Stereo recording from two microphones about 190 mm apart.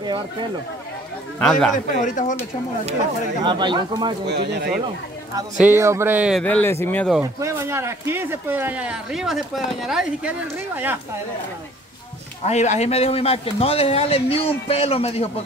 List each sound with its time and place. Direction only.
1.4 s a man's voice: 5° left (ahead or behind)
2.0 s a man's voice: 40° left (ahead or behind)
3.4 s speech: 25° right (ahead or behind)
4.3 s speech: 60° right (ahead or behind)
5.7 s speech: 15° right (ahead or behind)
6.4 s speech: 10° left (ahead or behind)
7.3 s speech: 15° right (ahead or behind)
12.4 s a man's voice: 35° left (ahead or behind)